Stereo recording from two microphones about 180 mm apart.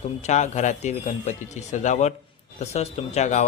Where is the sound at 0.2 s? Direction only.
40° left (ahead or behind).